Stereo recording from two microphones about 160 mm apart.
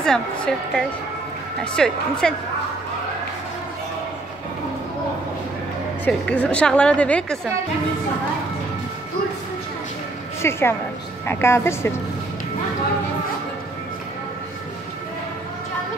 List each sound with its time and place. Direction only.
0.0 s a woman's voice: 5° left (ahead or behind)
6.0 s a woman's voice: 10° left (ahead or behind)
10.4 s a woman's voice: 15° left (ahead or behind)